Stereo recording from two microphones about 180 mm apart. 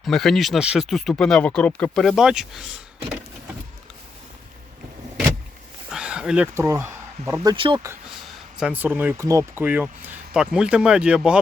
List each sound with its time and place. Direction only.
0.0 s speech: centre (ahead or behind)
5.9 s speech: 5° right (ahead or behind)
7.5 s speech: 25° right (ahead or behind)
8.5 s speech: 5° right (ahead or behind)